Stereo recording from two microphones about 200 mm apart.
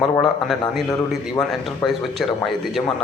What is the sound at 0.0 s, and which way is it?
Speech, centre (ahead or behind).